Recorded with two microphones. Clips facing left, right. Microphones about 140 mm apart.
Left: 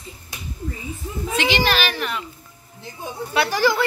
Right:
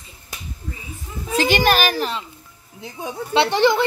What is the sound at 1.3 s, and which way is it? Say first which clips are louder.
Speech: right 4 dB; 45° right (ahead or behind).